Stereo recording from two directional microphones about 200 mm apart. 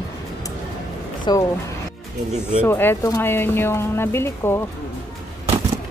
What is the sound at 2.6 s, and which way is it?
A woman's voice, 10° left (ahead or behind).